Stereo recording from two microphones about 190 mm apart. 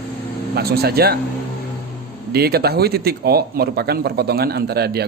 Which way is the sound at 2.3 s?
55° right (ahead or behind).